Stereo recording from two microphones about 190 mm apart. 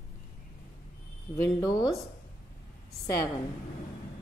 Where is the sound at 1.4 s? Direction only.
20° left (ahead or behind).